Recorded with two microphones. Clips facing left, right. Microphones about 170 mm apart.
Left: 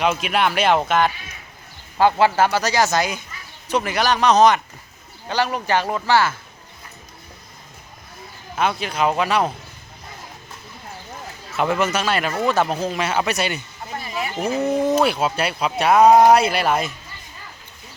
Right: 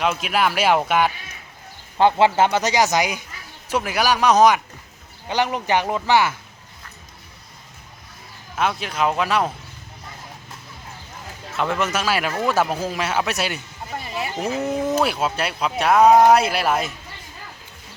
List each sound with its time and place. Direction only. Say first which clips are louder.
0.0 s speech: left 1 dB; centre (ahead or behind)
2.0 s speech: even; 20° right (ahead or behind)
8.5 s speech: left 1 dB; centre (ahead or behind)
11.5 s speech: left 2 dB; 5° left (ahead or behind)
14.3 s speech: left 4 dB; 10° left (ahead or behind)